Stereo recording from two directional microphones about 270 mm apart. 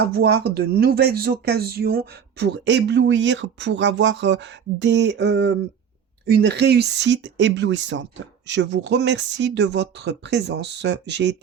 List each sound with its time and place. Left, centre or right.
0.0 s speech: right